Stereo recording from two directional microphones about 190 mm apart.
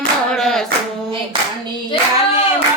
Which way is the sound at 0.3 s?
Centre (ahead or behind).